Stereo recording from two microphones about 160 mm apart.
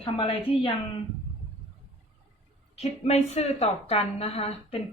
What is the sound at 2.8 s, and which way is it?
A woman's voice, 40° left (ahead or behind).